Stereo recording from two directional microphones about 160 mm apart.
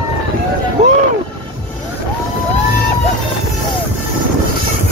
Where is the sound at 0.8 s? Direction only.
45° right (ahead or behind).